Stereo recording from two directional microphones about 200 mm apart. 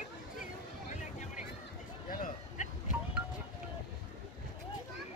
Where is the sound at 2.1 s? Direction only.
40° left (ahead or behind).